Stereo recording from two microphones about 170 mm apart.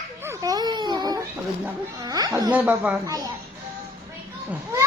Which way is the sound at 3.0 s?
20° right (ahead or behind).